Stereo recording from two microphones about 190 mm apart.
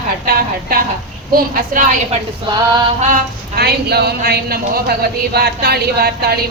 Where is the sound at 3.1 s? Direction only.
55° right (ahead or behind).